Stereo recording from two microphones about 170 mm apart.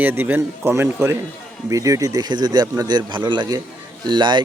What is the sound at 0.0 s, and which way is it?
A man's voice, 10° right (ahead or behind).